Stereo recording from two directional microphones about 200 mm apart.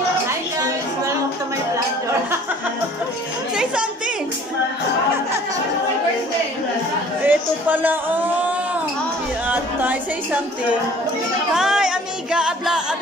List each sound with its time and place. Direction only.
0.3 s a sound: 15° right (ahead or behind)
7.2 s speech: 10° right (ahead or behind)
11.5 s music: 5° right (ahead or behind)